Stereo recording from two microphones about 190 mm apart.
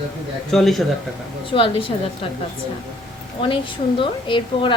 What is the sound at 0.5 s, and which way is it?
Speech, centre (ahead or behind).